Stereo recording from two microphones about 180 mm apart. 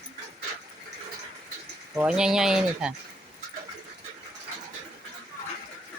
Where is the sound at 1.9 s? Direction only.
10° right (ahead or behind).